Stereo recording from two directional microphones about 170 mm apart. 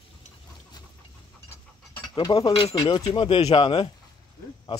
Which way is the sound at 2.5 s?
35° left (ahead or behind).